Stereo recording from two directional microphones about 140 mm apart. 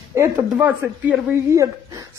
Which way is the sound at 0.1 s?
15° right (ahead or behind).